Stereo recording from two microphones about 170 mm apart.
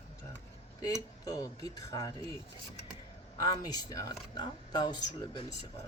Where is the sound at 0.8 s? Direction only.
20° left (ahead or behind).